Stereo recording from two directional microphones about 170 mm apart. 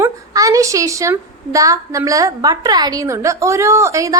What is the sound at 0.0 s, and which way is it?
A woman's voice, 20° right (ahead or behind).